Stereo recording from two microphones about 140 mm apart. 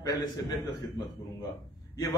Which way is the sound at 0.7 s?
30° left (ahead or behind).